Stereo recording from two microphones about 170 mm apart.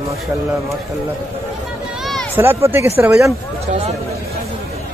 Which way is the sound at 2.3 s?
15° right (ahead or behind).